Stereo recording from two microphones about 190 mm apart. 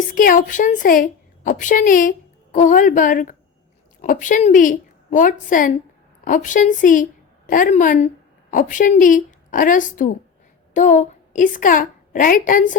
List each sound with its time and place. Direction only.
0.1 s a woman's voice: 45° left (ahead or behind)